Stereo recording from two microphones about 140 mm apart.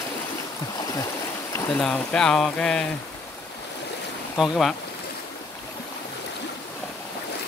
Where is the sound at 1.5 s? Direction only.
15° left (ahead or behind).